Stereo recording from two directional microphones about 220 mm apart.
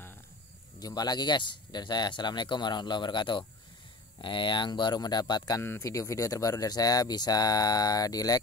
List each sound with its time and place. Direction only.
0.7 s speech: 15° left (ahead or behind)